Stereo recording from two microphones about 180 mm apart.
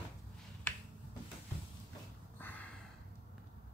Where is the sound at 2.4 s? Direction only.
10° left (ahead or behind).